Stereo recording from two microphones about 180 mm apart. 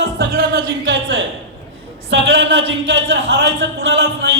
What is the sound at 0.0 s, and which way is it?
Speech, 65° right (ahead or behind).